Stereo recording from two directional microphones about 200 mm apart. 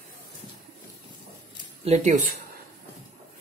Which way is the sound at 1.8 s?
35° right (ahead or behind).